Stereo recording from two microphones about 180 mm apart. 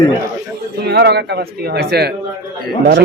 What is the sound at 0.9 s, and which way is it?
A man's voice, 65° right (ahead or behind).